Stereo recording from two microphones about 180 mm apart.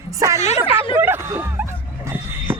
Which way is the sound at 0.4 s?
35° left (ahead or behind).